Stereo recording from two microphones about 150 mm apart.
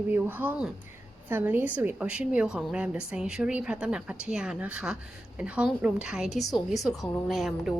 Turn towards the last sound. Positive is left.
turn(degrees=0)  # may be behind; listen again after turning